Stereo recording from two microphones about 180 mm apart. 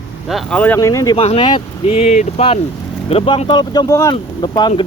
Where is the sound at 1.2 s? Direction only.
30° left (ahead or behind).